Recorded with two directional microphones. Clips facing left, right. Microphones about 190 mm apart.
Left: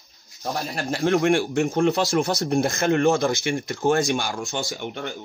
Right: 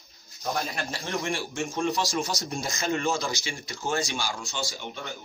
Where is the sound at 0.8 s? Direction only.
55° left (ahead or behind).